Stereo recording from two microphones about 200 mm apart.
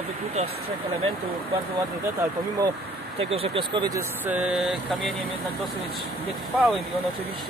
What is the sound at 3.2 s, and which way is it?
Speech, 30° right (ahead or behind).